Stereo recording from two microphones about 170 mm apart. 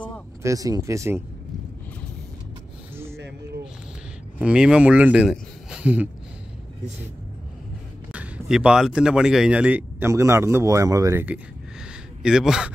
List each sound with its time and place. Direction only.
0.4 s speech: 20° right (ahead or behind)
4.4 s speech: 5° right (ahead or behind)
5.3 s a sound: 5° right (ahead or behind)
8.1 s speech: 5° right (ahead or behind)